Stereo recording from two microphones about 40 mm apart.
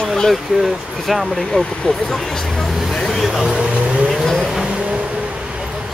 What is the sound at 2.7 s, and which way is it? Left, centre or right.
Vehicle, centre.